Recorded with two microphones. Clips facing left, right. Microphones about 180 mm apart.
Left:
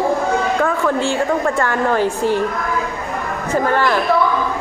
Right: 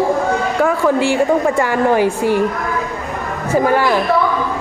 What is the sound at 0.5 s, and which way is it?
A woman's voice, 10° right (ahead or behind).